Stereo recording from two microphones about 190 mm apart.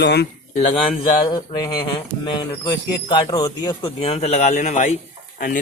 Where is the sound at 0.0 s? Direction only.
60° left (ahead or behind).